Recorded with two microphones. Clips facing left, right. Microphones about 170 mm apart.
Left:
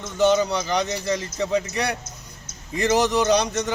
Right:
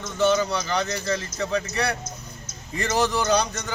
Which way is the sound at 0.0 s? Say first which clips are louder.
Left 2 dB; 20° left (ahead or behind).